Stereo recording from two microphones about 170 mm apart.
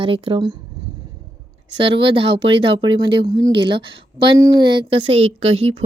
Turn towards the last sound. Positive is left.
turn(degrees=-35)  # may be behind; listen again after turning